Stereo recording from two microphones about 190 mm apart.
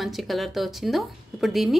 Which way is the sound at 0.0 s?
Centre (ahead or behind).